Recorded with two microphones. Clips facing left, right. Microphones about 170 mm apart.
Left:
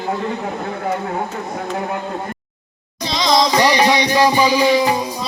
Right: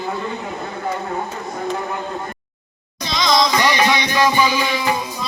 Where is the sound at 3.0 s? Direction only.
30° left (ahead or behind).